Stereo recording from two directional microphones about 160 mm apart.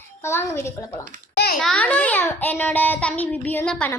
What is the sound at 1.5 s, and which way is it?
A child's voice, 5° left (ahead or behind).